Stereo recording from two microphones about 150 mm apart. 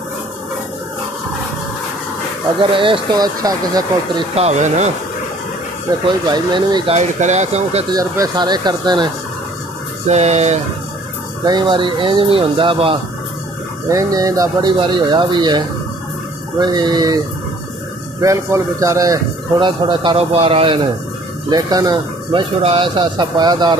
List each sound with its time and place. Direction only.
2.7 s a man's voice: 35° right (ahead or behind)
4.4 s speech: 50° right (ahead or behind)
5.9 s speech: 30° right (ahead or behind)
6.9 s speech: 55° right (ahead or behind)
7.9 s speech: 25° right (ahead or behind)
10.0 s speech: 50° right (ahead or behind)
11.4 s a man's voice: 30° right (ahead or behind)
13.8 s a man's voice: 20° right (ahead or behind)
18.2 s a man's voice: 20° right (ahead or behind); by 20.8 s 35° right (ahead or behind)
21.5 s speech: 25° right (ahead or behind)